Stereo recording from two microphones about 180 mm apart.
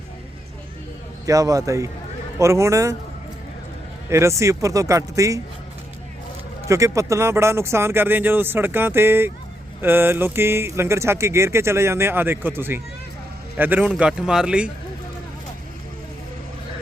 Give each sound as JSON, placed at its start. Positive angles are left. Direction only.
{"t": 1.3, "sound": "a man's voice", "side_deg": -20}
{"t": 4.1, "sound": "speech", "side_deg": -15}
{"t": 6.7, "sound": "speech", "side_deg": -15}